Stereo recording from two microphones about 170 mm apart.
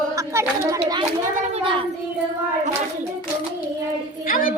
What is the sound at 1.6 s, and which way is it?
Child singing, 30° right (ahead or behind).